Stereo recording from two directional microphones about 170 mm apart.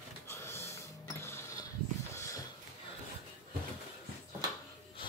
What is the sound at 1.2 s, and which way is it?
Mechanisms, 15° left (ahead or behind).